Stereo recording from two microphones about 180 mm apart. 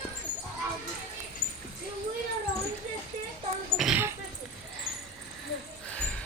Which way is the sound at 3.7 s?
Centre (ahead or behind).